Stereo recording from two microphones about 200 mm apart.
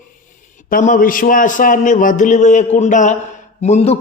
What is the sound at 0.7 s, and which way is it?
A man's voice, 40° left (ahead or behind).